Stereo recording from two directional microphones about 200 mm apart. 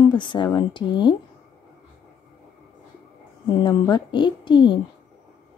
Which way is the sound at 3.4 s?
25° left (ahead or behind).